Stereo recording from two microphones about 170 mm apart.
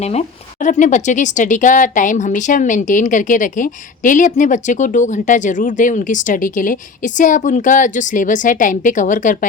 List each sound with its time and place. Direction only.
0.0 s speech: 40° left (ahead or behind)